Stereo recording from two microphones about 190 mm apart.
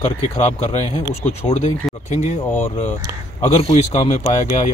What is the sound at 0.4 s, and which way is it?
Speech, 35° left (ahead or behind).